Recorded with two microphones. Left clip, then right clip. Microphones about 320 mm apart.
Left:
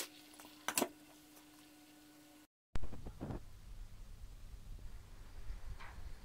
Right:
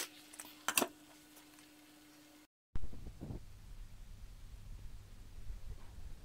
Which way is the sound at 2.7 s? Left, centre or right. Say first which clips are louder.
Left 4 dB; left.